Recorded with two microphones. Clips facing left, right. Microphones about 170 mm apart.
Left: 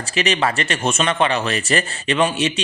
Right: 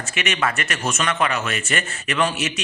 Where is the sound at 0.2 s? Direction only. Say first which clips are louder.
Left 4 dB; 30° left (ahead or behind).